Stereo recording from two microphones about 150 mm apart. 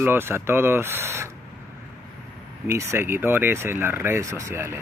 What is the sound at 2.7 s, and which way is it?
Speech, 15° right (ahead or behind).